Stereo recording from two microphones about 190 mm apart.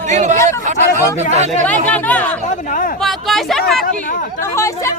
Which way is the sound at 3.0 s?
Centre (ahead or behind).